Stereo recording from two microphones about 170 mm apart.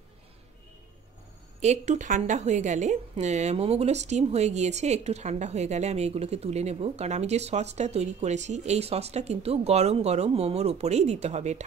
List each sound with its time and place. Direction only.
1.6 s a woman's voice: 40° right (ahead or behind)